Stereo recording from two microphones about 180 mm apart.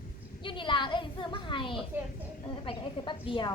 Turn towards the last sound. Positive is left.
turn(degrees=25)  # may be behind; listen again after turning